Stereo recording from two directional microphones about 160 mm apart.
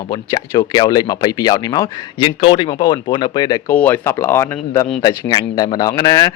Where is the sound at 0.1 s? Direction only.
25° left (ahead or behind).